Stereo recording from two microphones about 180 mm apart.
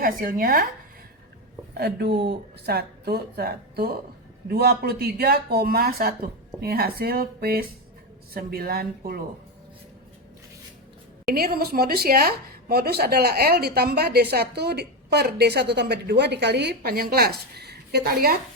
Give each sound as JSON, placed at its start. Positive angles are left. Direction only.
{"t": 0.0, "sound": "speech", "side_deg": -50}
{"t": 1.7, "sound": "a woman's voice", "side_deg": -65}
{"t": 11.3, "sound": "a woman's voice", "side_deg": -60}